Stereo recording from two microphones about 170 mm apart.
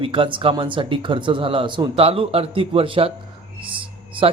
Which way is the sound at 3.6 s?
30° right (ahead or behind).